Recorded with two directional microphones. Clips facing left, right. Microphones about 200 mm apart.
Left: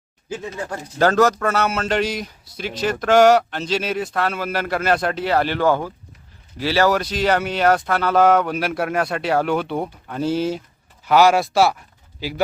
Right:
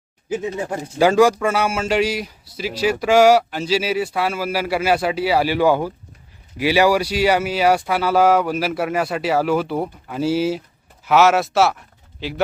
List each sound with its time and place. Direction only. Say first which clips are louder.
0.3 s speech: right 5 dB; 20° right (ahead or behind)
0.9 s speech: right 2 dB; 10° right (ahead or behind)